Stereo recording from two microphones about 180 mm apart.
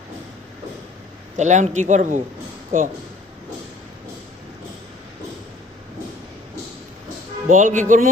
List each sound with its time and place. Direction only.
1.4 s a man's voice: 40° right (ahead or behind)
7.4 s speech: 45° right (ahead or behind)